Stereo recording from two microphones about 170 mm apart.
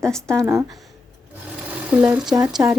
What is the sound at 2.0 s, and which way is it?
Speech, 10° right (ahead or behind).